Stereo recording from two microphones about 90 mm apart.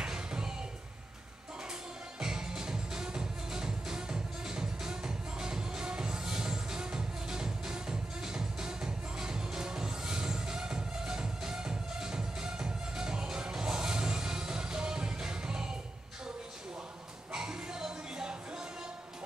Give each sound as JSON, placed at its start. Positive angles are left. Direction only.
{"t": 0.0, "sound": "a sound", "side_deg": -10}
{"t": 2.1, "sound": "music", "side_deg": -5}
{"t": 17.3, "sound": "music", "side_deg": -5}